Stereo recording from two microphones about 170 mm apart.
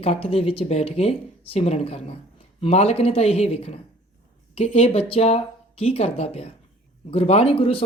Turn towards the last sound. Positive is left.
turn(degrees=35)  # may be behind; listen again after turning